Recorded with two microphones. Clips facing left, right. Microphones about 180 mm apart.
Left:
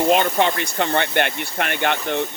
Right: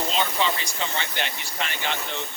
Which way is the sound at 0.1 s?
55° left (ahead or behind).